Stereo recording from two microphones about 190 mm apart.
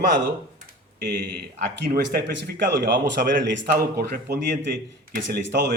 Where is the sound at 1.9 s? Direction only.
55° right (ahead or behind).